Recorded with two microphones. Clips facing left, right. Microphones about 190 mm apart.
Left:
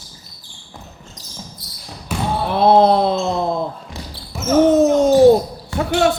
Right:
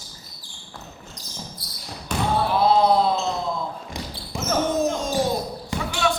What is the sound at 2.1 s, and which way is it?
Basketball bounce, 5° left (ahead or behind).